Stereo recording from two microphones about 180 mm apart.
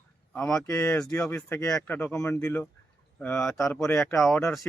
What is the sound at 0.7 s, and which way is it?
Speech, 15° left (ahead or behind).